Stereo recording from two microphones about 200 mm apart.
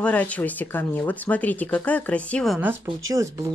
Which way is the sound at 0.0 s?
5° left (ahead or behind).